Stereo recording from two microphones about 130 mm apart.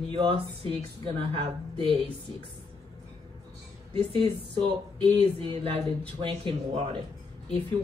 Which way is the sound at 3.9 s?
45° right (ahead or behind).